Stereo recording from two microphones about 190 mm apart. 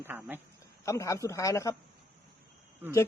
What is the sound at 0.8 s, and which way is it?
Speech, 15° left (ahead or behind).